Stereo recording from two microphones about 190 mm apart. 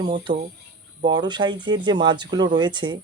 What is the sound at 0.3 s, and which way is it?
Speech, 45° right (ahead or behind).